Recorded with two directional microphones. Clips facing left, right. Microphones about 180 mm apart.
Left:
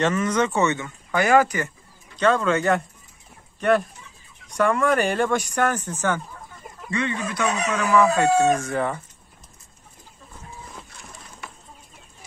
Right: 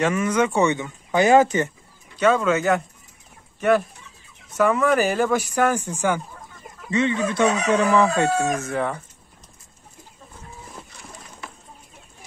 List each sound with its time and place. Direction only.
0.0 s speech: 10° right (ahead or behind)
2.1 s speech: 10° right (ahead or behind)
6.9 s speech: 20° right (ahead or behind)
7.7 s chicken: 30° right (ahead or behind)
8.5 s speech: centre (ahead or behind)